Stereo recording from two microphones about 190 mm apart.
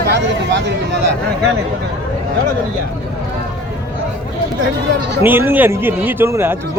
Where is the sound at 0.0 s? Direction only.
65° right (ahead or behind).